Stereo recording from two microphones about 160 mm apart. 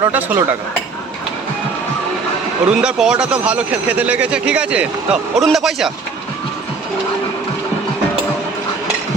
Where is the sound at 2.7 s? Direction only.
5° right (ahead or behind).